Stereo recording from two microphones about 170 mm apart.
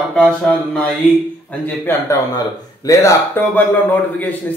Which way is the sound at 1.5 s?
15° left (ahead or behind).